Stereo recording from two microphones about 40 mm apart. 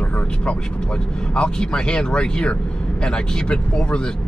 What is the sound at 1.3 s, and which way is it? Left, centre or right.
Speech, left.